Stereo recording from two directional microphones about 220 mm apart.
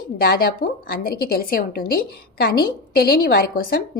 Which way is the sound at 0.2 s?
45° left (ahead or behind).